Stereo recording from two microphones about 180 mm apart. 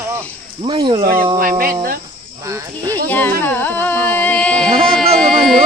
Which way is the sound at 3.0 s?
10° left (ahead or behind).